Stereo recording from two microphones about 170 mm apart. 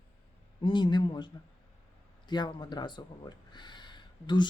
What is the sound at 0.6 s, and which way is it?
Speech, 25° left (ahead or behind).